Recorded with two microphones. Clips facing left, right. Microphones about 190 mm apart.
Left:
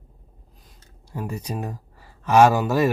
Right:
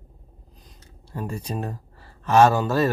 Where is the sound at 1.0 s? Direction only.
10° left (ahead or behind).